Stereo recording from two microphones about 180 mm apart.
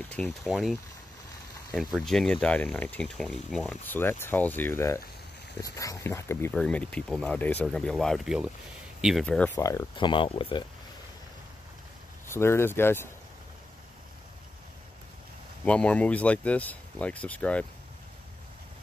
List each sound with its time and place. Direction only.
0.1 s speech: centre (ahead or behind)
9.6 s speech: 20° left (ahead or behind)
12.3 s speech: 15° left (ahead or behind)
15.6 s speech: 5° left (ahead or behind)